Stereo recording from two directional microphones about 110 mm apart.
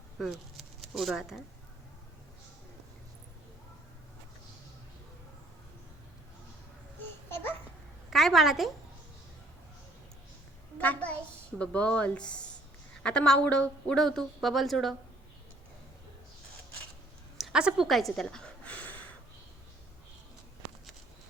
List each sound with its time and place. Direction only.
0.2 s speech: centre (ahead or behind)
7.3 s babbling: 25° left (ahead or behind)
8.1 s a woman's voice: centre (ahead or behind)
10.8 s a child's voice: 15° left (ahead or behind)
17.3 s a sound: 5° right (ahead or behind); by 18.9 s 10° left (ahead or behind)